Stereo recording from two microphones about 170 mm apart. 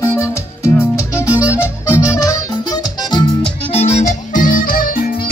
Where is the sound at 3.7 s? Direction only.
40° left (ahead or behind); by 5.0 s 55° left (ahead or behind).